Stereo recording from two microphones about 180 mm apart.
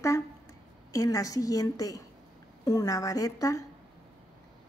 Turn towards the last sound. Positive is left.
turn(degrees=20)  # may be behind; listen again after turning